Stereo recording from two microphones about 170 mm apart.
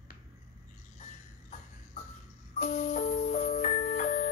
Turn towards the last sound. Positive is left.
turn(degrees=45)  # may be behind; listen again after turning